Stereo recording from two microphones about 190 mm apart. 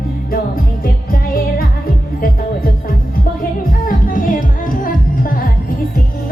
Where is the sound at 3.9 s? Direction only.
45° left (ahead or behind).